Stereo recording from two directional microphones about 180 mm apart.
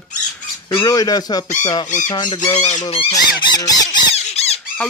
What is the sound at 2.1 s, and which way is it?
Speech, 25° left (ahead or behind).